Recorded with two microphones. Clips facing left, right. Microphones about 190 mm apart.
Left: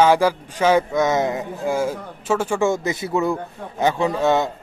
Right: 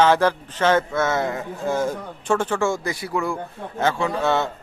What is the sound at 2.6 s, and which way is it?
A man's voice, 20° left (ahead or behind).